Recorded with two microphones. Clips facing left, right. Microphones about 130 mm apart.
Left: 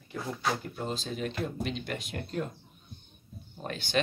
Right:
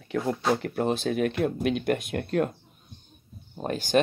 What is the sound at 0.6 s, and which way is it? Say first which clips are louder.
Speech: right 9 dB; 65° right (ahead or behind).